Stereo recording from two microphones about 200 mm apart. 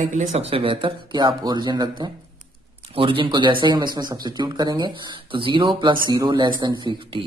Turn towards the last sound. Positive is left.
turn(degrees=-20)  # may be behind; listen again after turning